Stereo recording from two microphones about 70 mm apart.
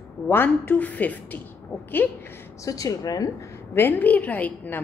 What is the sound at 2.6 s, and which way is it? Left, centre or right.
Speech, left.